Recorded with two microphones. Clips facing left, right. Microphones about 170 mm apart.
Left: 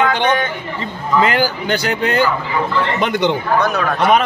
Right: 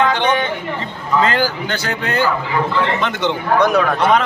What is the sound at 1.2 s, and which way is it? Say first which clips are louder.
A man's voice: left 1 dB; 15° left (ahead or behind).